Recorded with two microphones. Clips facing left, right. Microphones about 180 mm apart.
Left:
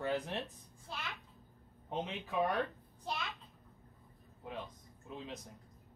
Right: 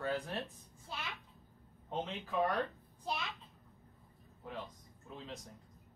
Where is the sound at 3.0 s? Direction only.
Centre (ahead or behind).